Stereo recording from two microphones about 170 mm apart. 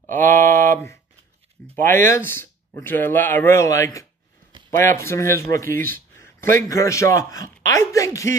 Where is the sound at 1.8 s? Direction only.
10° left (ahead or behind).